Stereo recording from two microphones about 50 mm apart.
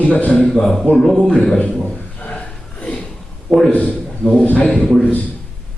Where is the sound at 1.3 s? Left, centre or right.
Centre.